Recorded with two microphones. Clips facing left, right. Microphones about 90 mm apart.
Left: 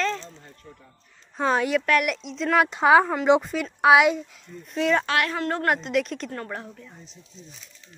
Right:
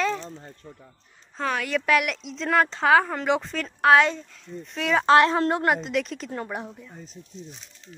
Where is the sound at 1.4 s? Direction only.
25° left (ahead or behind).